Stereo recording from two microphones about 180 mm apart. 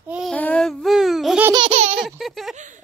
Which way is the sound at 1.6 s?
35° right (ahead or behind).